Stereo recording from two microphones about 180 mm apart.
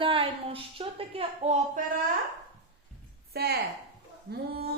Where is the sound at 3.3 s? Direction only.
60° right (ahead or behind).